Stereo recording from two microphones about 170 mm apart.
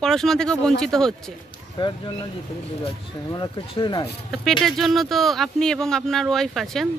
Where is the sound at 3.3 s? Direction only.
25° left (ahead or behind).